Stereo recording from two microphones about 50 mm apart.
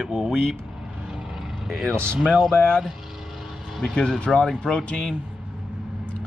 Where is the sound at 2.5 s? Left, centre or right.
Centre.